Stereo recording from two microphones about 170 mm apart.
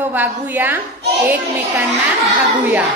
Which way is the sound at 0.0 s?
10° right (ahead or behind).